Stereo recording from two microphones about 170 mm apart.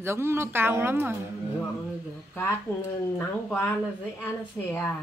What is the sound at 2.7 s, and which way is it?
A woman's voice, 10° left (ahead or behind).